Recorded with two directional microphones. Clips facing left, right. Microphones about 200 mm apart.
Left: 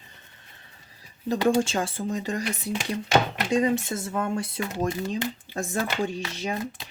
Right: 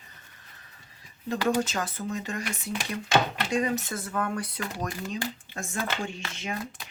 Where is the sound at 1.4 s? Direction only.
30° left (ahead or behind).